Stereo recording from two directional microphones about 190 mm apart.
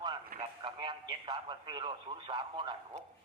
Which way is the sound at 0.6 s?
25° right (ahead or behind).